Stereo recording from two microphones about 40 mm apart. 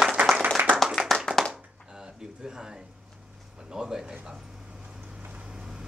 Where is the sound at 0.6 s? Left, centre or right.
Right.